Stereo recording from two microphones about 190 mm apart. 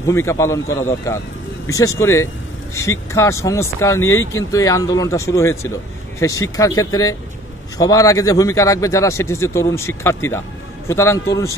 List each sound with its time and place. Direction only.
0.1 s speech: 15° left (ahead or behind)